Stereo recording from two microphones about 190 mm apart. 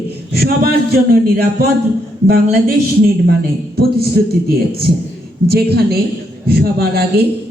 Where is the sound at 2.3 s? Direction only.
55° right (ahead or behind).